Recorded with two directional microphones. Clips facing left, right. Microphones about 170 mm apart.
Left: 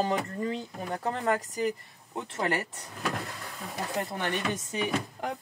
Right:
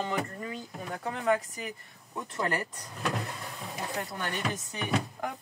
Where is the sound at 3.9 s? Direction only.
25° left (ahead or behind).